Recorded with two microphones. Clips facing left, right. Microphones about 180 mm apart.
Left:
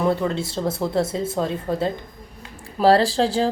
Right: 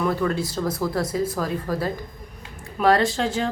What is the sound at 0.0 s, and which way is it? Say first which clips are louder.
Speech: left 2 dB; 25° left (ahead or behind).